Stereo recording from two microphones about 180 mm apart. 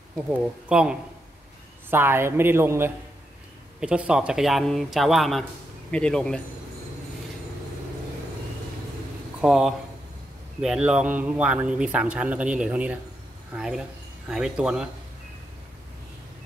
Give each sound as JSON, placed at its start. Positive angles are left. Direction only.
{"t": 0.3, "sound": "a man's voice", "side_deg": -5}
{"t": 9.4, "sound": "a man's voice", "side_deg": -5}